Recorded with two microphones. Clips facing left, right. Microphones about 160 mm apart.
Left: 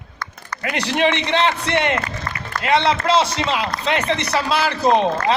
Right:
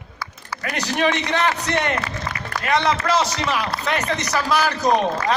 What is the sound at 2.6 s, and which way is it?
A man's voice, 25° left (ahead or behind).